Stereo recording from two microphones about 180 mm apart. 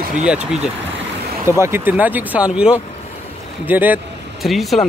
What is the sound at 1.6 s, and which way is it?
Speech, 10° right (ahead or behind).